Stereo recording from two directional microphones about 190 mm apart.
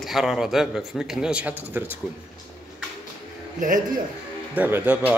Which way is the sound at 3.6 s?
45° right (ahead or behind).